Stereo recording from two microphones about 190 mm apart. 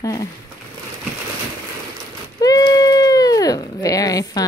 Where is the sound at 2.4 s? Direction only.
20° left (ahead or behind).